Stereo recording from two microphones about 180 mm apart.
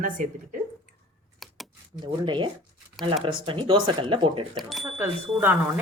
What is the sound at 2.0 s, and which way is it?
Speech, 25° right (ahead or behind).